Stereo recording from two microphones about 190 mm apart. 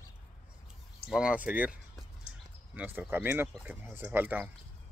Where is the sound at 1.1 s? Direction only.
5° right (ahead or behind).